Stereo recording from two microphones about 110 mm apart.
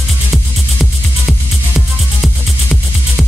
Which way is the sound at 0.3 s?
5° left (ahead or behind).